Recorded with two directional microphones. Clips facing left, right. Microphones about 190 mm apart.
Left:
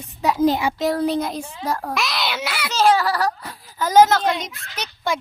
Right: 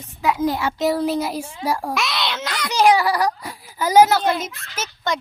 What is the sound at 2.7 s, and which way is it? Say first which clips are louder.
A child's voice: right 2 dB; 15° right (ahead or behind).